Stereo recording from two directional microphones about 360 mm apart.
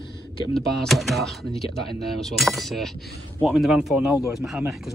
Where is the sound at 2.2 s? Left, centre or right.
Centre.